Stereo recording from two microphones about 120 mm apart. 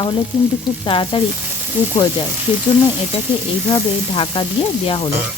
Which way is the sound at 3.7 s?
45° left (ahead or behind).